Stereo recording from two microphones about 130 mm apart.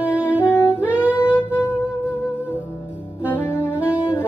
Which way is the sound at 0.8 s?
10° right (ahead or behind).